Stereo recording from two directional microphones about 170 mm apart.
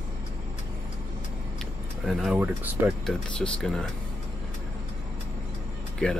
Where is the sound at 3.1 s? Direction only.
5° left (ahead or behind).